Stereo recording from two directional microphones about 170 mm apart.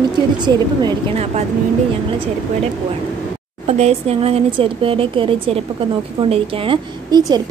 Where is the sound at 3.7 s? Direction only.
35° right (ahead or behind).